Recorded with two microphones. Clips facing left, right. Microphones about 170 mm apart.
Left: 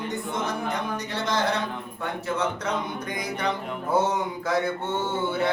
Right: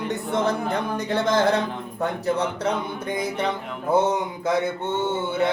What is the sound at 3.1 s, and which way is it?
A man's voice, 25° right (ahead or behind).